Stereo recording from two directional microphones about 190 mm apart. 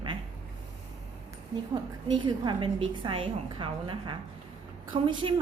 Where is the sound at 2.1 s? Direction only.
25° right (ahead or behind).